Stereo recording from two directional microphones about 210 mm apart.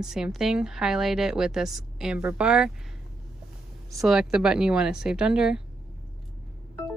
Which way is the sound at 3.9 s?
Centre (ahead or behind).